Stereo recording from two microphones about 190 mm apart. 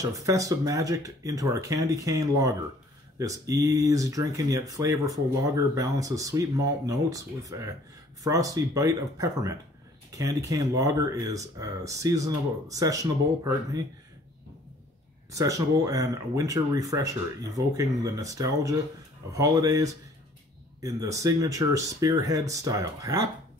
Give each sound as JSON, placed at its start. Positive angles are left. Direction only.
{"t": 0.0, "sound": "speech", "side_deg": -15}
{"t": 15.3, "sound": "speech", "side_deg": -15}